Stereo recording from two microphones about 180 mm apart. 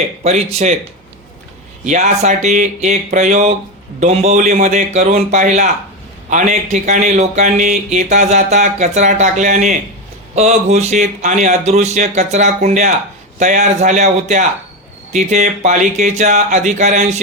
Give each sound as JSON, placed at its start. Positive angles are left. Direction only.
{"t": 0.2, "sound": "speech", "side_deg": -35}
{"t": 1.9, "sound": "speech", "side_deg": -40}